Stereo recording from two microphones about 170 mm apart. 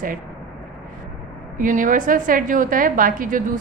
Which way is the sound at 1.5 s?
50° right (ahead or behind).